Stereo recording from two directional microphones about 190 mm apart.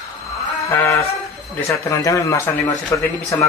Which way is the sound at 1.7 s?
15° left (ahead or behind).